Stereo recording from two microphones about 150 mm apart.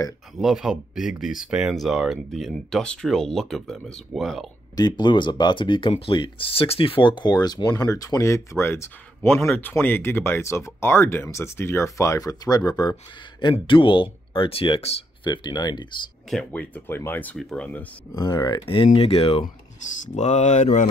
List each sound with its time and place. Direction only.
0.4 s speech: centre (ahead or behind)
4.7 s speech: 30° left (ahead or behind)
16.3 s speech: 5° left (ahead or behind)
18.1 s speech: 25° left (ahead or behind); by 19.4 s 40° left (ahead or behind)
20.2 s mantra: 50° left (ahead or behind)